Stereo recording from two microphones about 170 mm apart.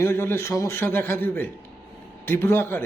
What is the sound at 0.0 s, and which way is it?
A man's voice, 15° left (ahead or behind).